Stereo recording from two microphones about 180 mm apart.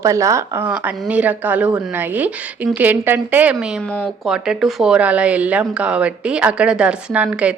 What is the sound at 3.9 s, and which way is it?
Speech, 10° left (ahead or behind).